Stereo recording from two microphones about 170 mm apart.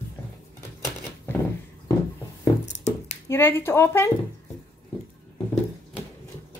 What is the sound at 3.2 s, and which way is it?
Speech, 15° left (ahead or behind).